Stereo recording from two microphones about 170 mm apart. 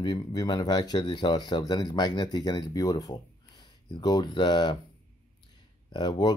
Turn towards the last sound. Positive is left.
turn(degrees=25)  # may be behind; listen again after turning